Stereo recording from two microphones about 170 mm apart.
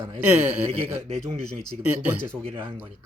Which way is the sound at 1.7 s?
5° right (ahead or behind).